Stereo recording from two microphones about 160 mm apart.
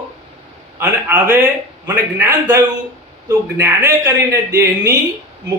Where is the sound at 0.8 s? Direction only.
15° right (ahead or behind).